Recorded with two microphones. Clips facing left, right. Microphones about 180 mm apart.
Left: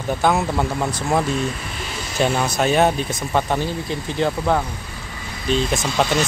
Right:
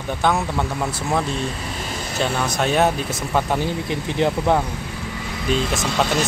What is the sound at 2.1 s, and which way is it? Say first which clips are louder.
Speech: left 3 dB; 5° left (ahead or behind).